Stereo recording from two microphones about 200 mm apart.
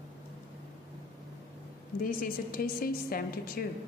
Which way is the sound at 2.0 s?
45° left (ahead or behind).